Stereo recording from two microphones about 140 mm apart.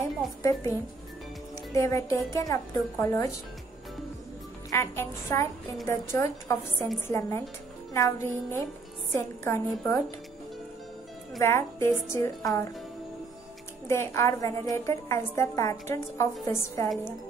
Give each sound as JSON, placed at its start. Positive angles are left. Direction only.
{"t": 0.4, "sound": "a woman's voice", "side_deg": 20}
{"t": 4.6, "sound": "a woman's voice", "side_deg": 20}
{"t": 11.3, "sound": "a woman's voice", "side_deg": 20}
{"t": 13.8, "sound": "a woman's voice", "side_deg": 20}